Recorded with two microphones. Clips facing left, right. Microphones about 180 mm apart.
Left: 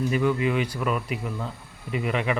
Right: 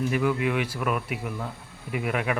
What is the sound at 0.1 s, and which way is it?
Speech, 5° right (ahead or behind).